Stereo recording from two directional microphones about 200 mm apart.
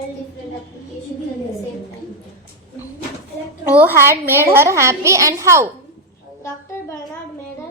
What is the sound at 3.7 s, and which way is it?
A woman's voice, 10° right (ahead or behind).